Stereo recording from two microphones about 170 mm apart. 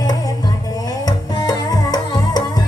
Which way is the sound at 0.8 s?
20° left (ahead or behind).